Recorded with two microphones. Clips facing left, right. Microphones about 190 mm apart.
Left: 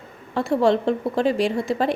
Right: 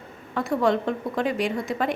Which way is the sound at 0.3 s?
30° left (ahead or behind).